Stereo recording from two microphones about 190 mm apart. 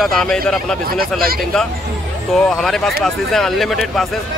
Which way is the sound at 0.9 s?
50° right (ahead or behind).